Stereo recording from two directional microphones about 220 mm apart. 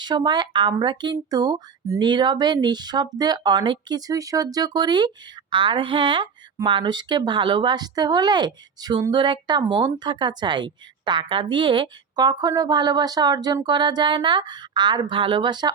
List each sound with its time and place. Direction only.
0.0 s speech: 20° right (ahead or behind)